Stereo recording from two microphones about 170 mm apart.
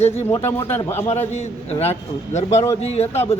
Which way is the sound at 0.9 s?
40° left (ahead or behind).